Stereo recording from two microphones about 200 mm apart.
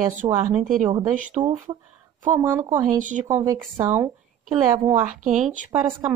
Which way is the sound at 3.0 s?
40° right (ahead or behind).